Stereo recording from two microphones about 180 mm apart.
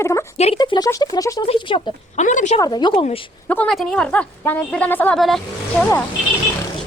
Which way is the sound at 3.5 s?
10° left (ahead or behind).